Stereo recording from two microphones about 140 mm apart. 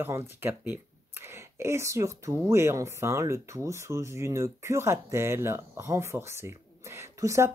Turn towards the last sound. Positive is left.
turn(degrees=-20)  # may be behind; listen again after turning